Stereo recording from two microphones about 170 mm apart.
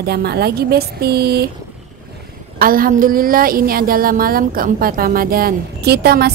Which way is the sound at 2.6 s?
55° right (ahead or behind).